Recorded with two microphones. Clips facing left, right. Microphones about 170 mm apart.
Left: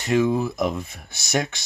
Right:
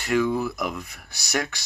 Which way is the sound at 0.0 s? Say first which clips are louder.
Left 2 dB; 20° left (ahead or behind).